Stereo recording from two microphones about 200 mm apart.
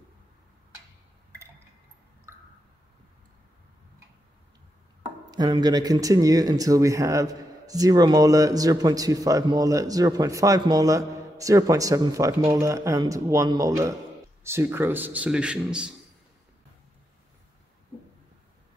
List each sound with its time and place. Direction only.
5.3 s speech: 20° right (ahead or behind); by 15.9 s 5° right (ahead or behind)